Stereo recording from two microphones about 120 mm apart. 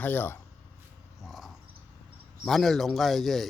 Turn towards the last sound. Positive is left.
turn(degrees=0)  # may be behind; listen again after turning